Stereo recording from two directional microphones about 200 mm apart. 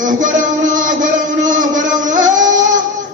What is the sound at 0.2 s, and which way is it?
Music, 40° right (ahead or behind).